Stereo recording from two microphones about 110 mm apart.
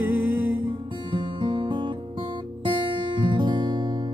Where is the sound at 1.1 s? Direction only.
45° right (ahead or behind).